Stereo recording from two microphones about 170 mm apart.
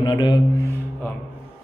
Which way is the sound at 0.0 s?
25° left (ahead or behind).